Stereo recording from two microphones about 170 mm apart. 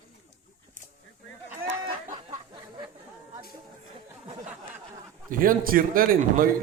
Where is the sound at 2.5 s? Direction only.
25° right (ahead or behind).